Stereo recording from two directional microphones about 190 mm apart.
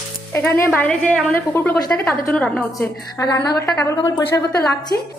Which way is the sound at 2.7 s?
20° left (ahead or behind).